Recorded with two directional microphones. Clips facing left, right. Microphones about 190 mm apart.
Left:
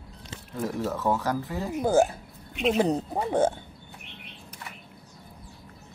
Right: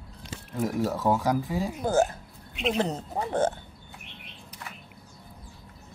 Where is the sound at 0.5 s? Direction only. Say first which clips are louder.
Right 2 dB; 10° right (ahead or behind).